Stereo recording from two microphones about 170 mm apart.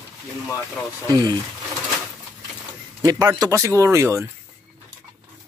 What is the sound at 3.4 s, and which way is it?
Speech, 15° right (ahead or behind).